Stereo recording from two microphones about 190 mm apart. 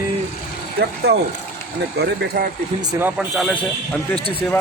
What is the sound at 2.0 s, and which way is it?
Speech, 60° right (ahead or behind).